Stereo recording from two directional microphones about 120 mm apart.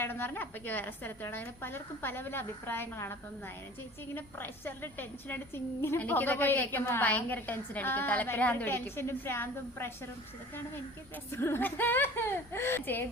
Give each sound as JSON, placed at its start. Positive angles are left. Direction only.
{"t": 0.0, "sound": "a woman's voice", "side_deg": 15}
{"t": 11.3, "sound": "a woman's voice", "side_deg": 20}